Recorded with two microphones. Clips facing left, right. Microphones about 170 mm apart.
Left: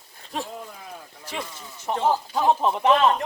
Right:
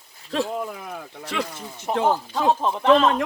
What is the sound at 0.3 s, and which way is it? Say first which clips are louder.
Speech: right 7 dB; 85° right.